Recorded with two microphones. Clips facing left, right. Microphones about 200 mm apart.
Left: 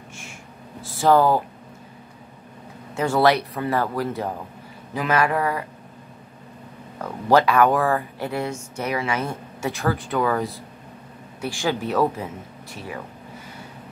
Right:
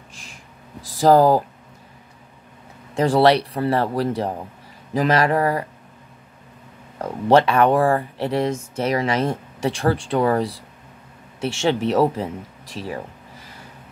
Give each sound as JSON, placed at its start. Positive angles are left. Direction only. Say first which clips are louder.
{"t": 0.1, "sound": "a sound", "louder": "left 4 dB", "side_deg": -35}
{"t": 0.8, "sound": "speech", "louder": "right 3 dB", "side_deg": -35}
{"t": 3.0, "sound": "speech", "louder": "right 3 dB", "side_deg": -30}
{"t": 7.0, "sound": "speech", "louder": "right 3 dB", "side_deg": -30}
{"t": 11.6, "sound": "speech", "louder": "right 4 dB", "side_deg": -25}